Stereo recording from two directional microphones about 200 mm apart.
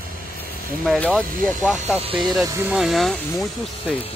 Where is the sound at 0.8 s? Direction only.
5° left (ahead or behind).